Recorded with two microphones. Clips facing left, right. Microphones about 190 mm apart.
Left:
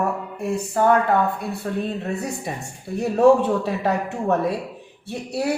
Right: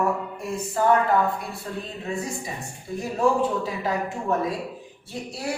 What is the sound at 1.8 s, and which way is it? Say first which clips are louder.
A woman's voice: left 2 dB; 65° left (ahead or behind).